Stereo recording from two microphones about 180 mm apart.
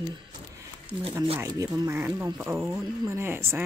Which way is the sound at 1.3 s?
20° right (ahead or behind).